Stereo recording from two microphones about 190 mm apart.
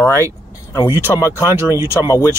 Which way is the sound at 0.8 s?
10° right (ahead or behind).